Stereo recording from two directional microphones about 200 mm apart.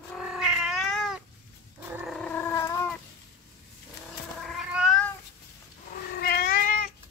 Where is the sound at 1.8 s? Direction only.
10° right (ahead or behind).